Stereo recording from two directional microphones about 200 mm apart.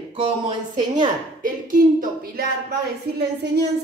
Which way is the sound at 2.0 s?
50° right (ahead or behind).